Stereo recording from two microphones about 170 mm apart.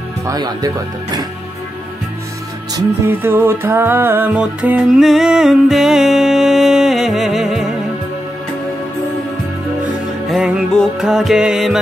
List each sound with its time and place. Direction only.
0.3 s speech: 20° right (ahead or behind)
2.7 s music: 15° right (ahead or behind)
10.2 s music: centre (ahead or behind)